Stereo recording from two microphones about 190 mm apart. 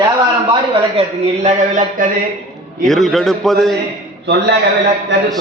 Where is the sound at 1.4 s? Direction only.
45° right (ahead or behind).